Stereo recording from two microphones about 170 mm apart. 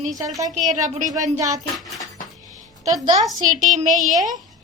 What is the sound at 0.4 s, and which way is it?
Speech, 45° right (ahead or behind).